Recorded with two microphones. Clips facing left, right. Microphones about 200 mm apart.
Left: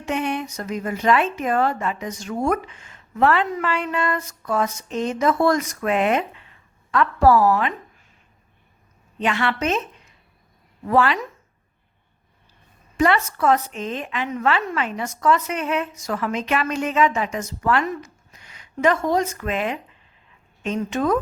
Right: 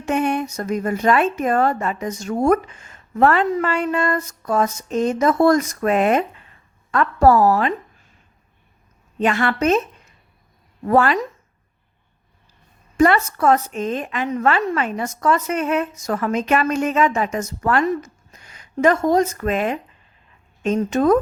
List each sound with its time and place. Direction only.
0.0 s a woman's voice: 45° right (ahead or behind)
9.1 s a woman's voice: 45° right (ahead or behind)
10.8 s a woman's voice: 45° right (ahead or behind)
13.0 s a woman's voice: 45° right (ahead or behind)